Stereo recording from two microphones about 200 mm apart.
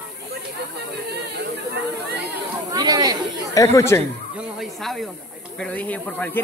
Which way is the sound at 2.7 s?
20° right (ahead or behind).